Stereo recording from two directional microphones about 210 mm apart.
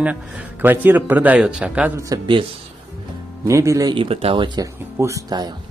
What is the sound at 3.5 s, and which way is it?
Speech, 15° right (ahead or behind).